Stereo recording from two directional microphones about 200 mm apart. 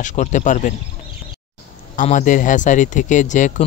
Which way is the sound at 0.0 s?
35° left (ahead or behind).